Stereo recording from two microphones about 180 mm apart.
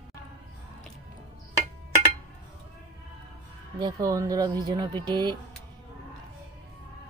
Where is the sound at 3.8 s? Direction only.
20° right (ahead or behind).